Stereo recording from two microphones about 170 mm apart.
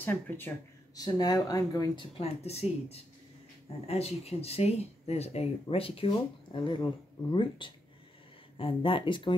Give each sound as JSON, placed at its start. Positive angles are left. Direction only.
{"t": 0.0, "sound": "speech", "side_deg": 10}
{"t": 0.9, "sound": "speech", "side_deg": 25}
{"t": 2.1, "sound": "speech", "side_deg": 40}